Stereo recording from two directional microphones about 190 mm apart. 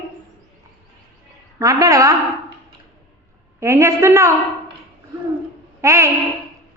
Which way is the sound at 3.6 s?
15° right (ahead or behind).